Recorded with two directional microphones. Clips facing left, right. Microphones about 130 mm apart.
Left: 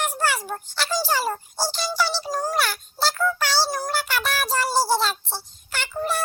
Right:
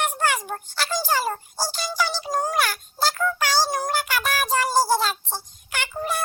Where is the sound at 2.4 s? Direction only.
10° right (ahead or behind).